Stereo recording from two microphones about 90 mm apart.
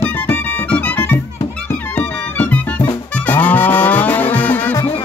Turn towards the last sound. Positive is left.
turn(degrees=20)  # may be behind; listen again after turning